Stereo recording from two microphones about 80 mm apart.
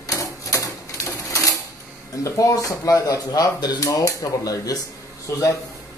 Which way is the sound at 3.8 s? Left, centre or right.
Left.